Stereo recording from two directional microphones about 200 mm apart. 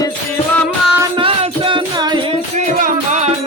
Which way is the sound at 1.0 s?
25° right (ahead or behind).